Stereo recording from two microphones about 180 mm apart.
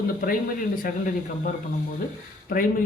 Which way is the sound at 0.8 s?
50° left (ahead or behind).